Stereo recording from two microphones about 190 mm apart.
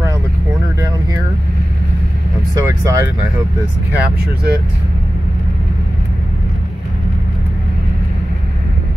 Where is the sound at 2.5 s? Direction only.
15° right (ahead or behind).